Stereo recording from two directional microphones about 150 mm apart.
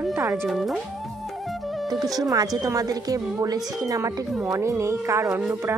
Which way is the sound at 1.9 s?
25° right (ahead or behind).